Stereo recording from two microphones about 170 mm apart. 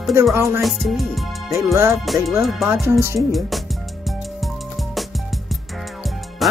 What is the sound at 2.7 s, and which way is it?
Speech, 15° right (ahead or behind).